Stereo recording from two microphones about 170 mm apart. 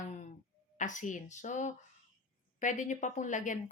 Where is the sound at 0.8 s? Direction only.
50° left (ahead or behind).